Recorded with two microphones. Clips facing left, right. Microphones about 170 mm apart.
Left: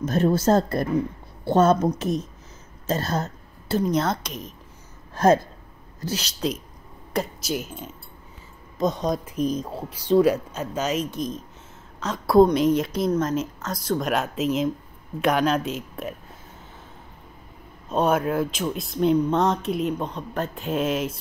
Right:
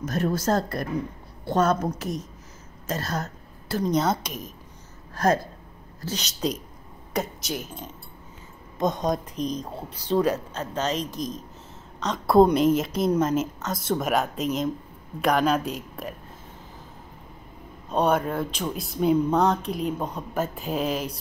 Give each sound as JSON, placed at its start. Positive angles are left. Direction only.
{"t": 0.0, "sound": "a woman's voice", "side_deg": 25}
{"t": 3.8, "sound": "speech", "side_deg": 0}
{"t": 5.1, "sound": "speech", "side_deg": 25}
{"t": 6.1, "sound": "speech", "side_deg": 5}
{"t": 9.0, "sound": "speech", "side_deg": 5}
{"t": 17.8, "sound": "speech", "side_deg": 0}